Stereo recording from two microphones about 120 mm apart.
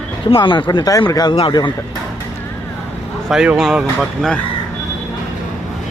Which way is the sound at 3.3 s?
5° right (ahead or behind).